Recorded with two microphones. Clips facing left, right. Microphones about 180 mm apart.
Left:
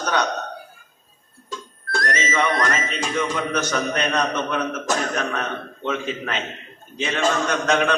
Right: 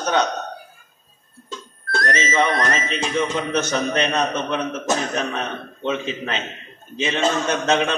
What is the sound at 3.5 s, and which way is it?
A man's voice, 25° right (ahead or behind).